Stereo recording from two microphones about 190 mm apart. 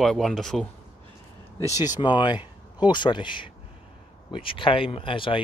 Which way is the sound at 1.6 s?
20° left (ahead or behind).